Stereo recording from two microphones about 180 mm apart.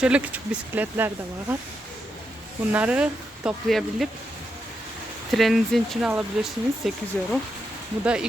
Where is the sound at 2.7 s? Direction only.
5° right (ahead or behind).